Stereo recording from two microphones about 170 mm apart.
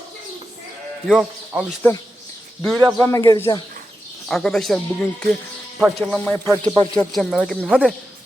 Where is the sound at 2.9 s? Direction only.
15° left (ahead or behind).